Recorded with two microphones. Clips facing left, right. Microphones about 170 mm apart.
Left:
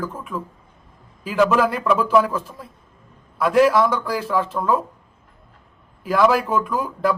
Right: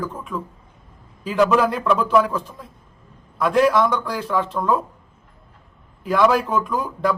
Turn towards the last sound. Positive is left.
turn(degrees=5)  # may be behind; listen again after turning